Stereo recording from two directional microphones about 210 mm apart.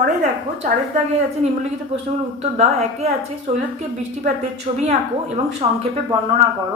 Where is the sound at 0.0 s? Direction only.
35° right (ahead or behind).